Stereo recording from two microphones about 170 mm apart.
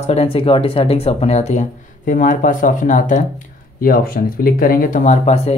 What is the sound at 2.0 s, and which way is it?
Speech, 55° left (ahead or behind).